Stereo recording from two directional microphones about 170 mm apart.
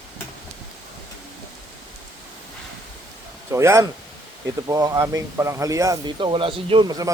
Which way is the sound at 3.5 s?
15° right (ahead or behind).